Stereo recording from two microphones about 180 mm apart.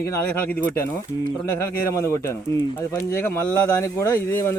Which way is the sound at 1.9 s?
15° left (ahead or behind).